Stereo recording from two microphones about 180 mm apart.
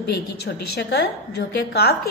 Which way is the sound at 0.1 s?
65° left (ahead or behind).